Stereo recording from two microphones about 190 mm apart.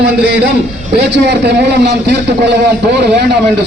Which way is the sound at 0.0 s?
60° right (ahead or behind).